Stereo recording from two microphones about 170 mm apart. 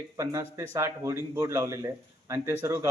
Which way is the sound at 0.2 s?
15° right (ahead or behind).